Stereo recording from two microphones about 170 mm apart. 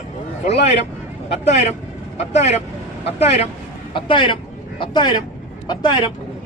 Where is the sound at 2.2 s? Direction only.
40° left (ahead or behind).